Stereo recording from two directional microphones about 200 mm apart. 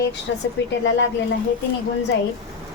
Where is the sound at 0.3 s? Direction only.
60° left (ahead or behind).